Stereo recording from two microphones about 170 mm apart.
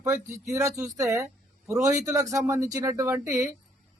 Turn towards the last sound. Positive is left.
turn(degrees=-15)  # may be behind; listen again after turning